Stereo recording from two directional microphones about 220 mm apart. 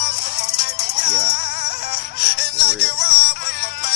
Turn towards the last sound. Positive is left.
turn(degrees=45)  # may be behind; listen again after turning